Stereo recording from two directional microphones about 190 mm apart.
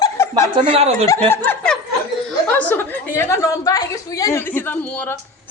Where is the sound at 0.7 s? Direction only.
30° right (ahead or behind).